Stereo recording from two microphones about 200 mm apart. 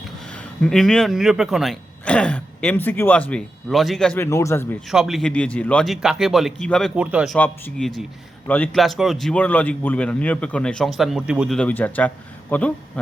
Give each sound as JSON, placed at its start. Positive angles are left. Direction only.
{"t": 0.3, "sound": "speech", "side_deg": 5}
{"t": 4.9, "sound": "speech", "side_deg": 0}
{"t": 7.3, "sound": "speech", "side_deg": 5}